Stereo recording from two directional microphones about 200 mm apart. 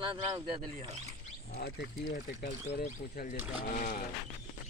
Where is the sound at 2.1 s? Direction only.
45° left (ahead or behind).